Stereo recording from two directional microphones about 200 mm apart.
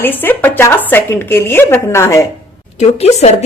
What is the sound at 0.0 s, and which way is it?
A woman's voice, 10° left (ahead or behind).